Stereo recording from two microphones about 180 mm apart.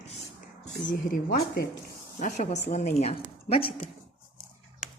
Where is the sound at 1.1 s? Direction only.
60° left (ahead or behind).